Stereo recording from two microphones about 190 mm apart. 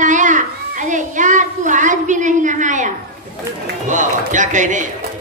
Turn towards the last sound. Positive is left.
turn(degrees=-40)  # may be behind; listen again after turning